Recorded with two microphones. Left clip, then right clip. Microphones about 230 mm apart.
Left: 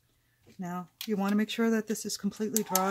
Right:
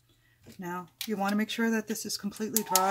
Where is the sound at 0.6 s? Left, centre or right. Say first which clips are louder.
Right 2 dB; left.